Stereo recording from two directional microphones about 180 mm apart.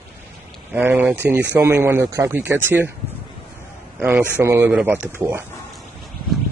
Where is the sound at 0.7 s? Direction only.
10° right (ahead or behind).